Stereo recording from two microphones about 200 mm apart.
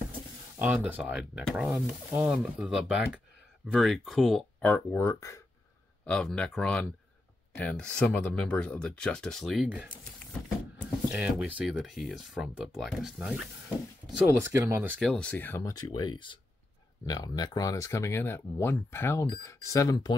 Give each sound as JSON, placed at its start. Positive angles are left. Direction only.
{"t": 0.6, "sound": "speech", "side_deg": -10}
{"t": 11.1, "sound": "speech", "side_deg": -5}
{"t": 14.2, "sound": "speech", "side_deg": -15}
{"t": 15.0, "sound": "speech", "side_deg": 5}